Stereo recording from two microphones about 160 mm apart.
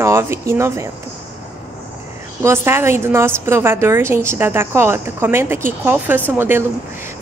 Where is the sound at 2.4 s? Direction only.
15° right (ahead or behind).